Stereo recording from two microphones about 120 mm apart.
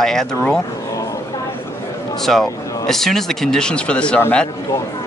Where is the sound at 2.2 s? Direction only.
5° left (ahead or behind).